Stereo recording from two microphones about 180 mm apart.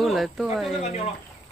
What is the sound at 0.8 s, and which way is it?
Speech, 35° left (ahead or behind).